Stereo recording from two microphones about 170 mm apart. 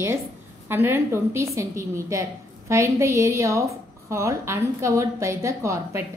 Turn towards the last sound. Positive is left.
turn(degrees=-15)  # may be behind; listen again after turning